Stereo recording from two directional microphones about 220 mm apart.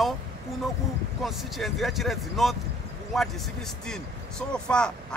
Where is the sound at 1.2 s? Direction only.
Centre (ahead or behind).